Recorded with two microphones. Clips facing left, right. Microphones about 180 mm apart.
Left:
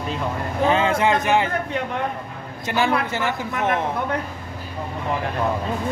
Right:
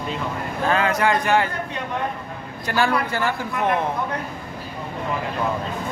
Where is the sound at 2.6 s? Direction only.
20° left (ahead or behind).